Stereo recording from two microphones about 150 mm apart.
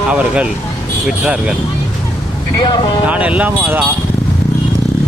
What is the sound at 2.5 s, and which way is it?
Speech, 30° left (ahead or behind).